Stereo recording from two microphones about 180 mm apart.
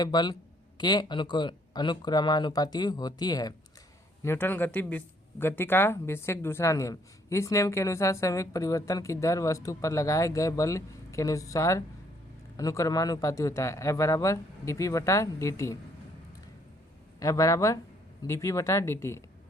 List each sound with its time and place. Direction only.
0.0 s speech: 25° left (ahead or behind)
17.2 s speech: 20° left (ahead or behind)